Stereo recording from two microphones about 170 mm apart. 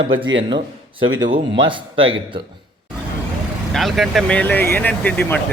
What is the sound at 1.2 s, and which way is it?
Speech, 30° right (ahead or behind).